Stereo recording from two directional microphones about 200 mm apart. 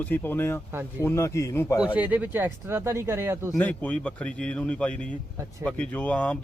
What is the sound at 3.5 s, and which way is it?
A man's voice, 10° left (ahead or behind).